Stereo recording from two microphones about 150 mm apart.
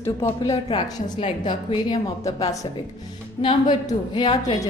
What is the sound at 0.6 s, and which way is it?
Speech, 35° left (ahead or behind).